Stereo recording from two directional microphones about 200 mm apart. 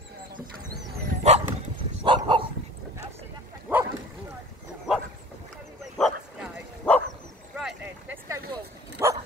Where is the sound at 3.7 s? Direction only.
10° right (ahead or behind).